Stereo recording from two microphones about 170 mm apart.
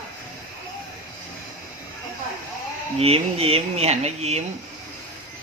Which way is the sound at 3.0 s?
35° right (ahead or behind).